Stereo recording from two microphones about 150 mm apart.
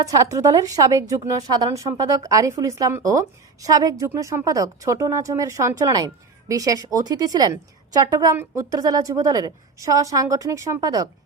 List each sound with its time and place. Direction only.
0.0 s speech: 20° right (ahead or behind)